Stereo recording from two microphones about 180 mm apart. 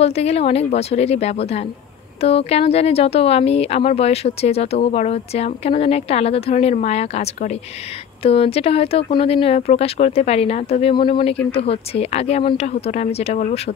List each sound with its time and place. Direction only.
0.0 s speech: 35° left (ahead or behind)